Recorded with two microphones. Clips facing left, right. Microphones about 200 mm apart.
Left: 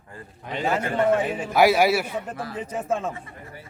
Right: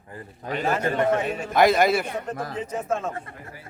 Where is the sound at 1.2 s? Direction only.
10° left (ahead or behind).